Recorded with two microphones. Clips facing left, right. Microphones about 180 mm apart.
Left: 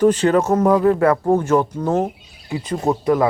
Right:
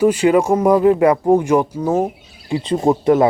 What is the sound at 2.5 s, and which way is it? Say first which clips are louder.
Speech: right 4 dB; 30° right (ahead or behind).